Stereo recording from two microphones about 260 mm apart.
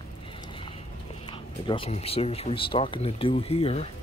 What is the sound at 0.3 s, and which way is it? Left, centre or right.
Clip-clop, centre.